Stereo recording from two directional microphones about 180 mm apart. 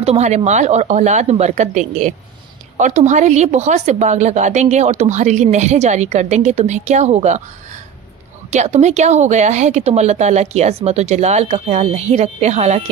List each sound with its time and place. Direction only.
0.0 s a woman's voice: 35° right (ahead or behind)
8.5 s a woman's voice: 40° right (ahead or behind)